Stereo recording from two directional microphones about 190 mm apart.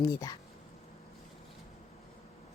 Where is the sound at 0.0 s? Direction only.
15° left (ahead or behind).